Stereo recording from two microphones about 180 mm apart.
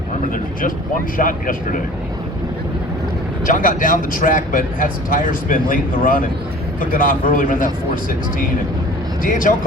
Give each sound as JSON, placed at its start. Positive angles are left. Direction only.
{"t": 1.1, "sound": "speech", "side_deg": 50}
{"t": 3.4, "sound": "speech", "side_deg": 50}
{"t": 9.2, "sound": "speech", "side_deg": 50}